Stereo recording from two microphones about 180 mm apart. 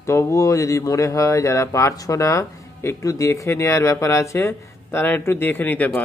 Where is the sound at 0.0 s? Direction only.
15° left (ahead or behind).